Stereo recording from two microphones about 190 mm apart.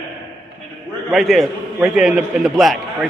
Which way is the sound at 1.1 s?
Centre (ahead or behind).